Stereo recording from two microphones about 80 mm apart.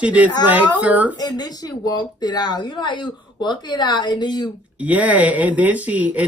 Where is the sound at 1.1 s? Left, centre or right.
Left.